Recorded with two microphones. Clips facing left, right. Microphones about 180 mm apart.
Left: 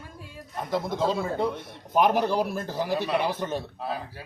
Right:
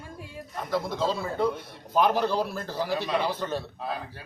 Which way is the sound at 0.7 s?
20° left (ahead or behind).